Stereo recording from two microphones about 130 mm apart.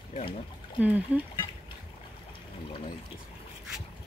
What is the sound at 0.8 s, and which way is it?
Speech, 10° right (ahead or behind).